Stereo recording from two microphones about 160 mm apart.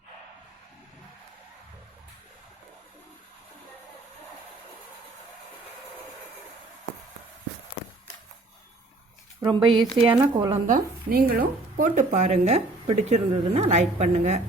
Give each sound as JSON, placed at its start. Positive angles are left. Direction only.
{"t": 9.4, "sound": "speech", "side_deg": -30}
{"t": 9.7, "sound": "a woman's voice", "side_deg": 0}
{"t": 10.2, "sound": "speech", "side_deg": -20}
{"t": 10.7, "sound": "speech", "side_deg": -65}